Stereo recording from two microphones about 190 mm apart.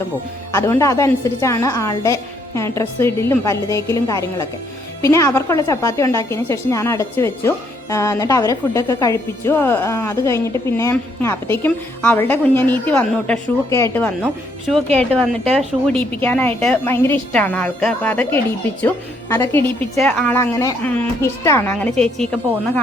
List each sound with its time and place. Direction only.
0.5 s a woman's voice: 15° left (ahead or behind)
20.4 s a woman's voice: 15° left (ahead or behind)